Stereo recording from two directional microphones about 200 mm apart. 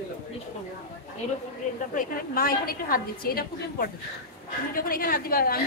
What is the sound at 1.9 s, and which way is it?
A woman's voice, 45° left (ahead or behind).